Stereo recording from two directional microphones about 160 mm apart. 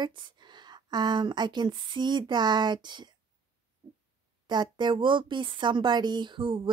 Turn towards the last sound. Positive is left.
turn(degrees=-30)  # may be behind; listen again after turning